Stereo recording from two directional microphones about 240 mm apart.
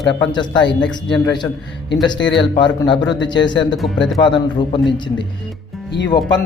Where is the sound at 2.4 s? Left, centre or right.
Centre.